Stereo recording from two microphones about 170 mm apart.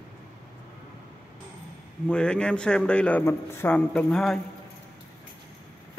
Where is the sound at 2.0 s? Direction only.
5° left (ahead or behind).